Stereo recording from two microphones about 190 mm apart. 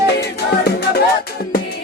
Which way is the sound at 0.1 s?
60° left (ahead or behind).